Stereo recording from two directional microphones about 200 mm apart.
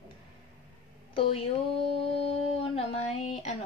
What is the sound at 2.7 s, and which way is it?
Speech, 30° left (ahead or behind).